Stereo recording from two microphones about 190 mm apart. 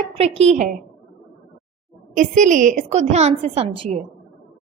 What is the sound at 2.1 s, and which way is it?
A woman's voice, 40° right (ahead or behind).